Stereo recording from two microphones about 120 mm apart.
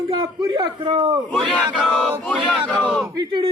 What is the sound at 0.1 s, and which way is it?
Speech, 35° right (ahead or behind).